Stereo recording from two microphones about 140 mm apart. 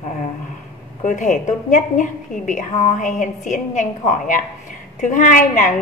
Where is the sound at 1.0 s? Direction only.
60° left (ahead or behind).